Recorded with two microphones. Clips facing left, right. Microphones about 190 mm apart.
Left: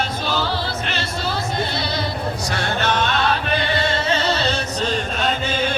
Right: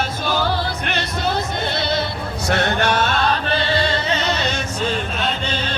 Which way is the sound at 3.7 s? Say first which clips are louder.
Even; 25° left (ahead or behind).